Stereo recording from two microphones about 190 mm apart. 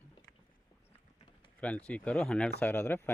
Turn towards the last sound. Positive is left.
turn(degrees=10)  # may be behind; listen again after turning